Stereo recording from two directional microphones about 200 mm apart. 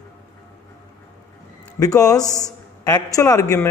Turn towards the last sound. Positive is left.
turn(degrees=15)  # may be behind; listen again after turning